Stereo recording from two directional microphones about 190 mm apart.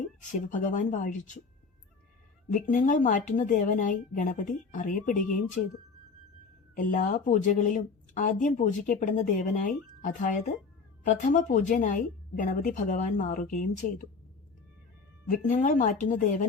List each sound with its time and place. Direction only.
0.3 s speech: 40° left (ahead or behind)
2.5 s speech: 40° left (ahead or behind)
6.7 s speech: 45° left (ahead or behind)
15.4 s speech: 40° left (ahead or behind)